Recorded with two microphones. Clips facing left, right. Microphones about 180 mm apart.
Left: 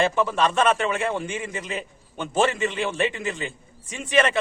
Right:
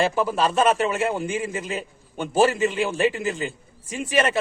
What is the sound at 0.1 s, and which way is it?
A man's voice, 5° right (ahead or behind).